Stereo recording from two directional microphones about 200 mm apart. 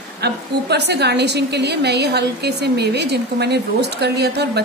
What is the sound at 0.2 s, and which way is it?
A woman's voice, 55° right (ahead or behind).